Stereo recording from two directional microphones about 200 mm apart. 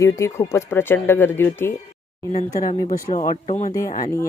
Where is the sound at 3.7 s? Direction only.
15° left (ahead or behind).